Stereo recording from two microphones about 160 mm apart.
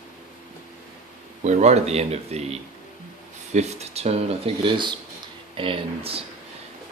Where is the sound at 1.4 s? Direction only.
45° right (ahead or behind).